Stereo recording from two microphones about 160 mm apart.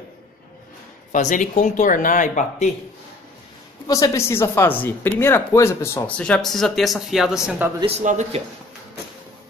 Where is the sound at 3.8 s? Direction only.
20° left (ahead or behind); by 7.6 s 5° right (ahead or behind).